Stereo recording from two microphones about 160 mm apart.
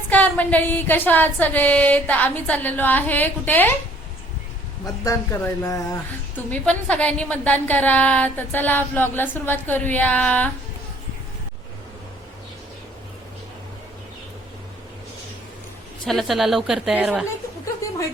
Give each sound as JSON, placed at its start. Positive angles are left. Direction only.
{"t": 0.1, "sound": "a woman's voice", "side_deg": 10}
{"t": 5.0, "sound": "a woman's voice", "side_deg": 15}
{"t": 16.0, "sound": "a woman's voice", "side_deg": 0}
{"t": 17.8, "sound": "a sound", "side_deg": 20}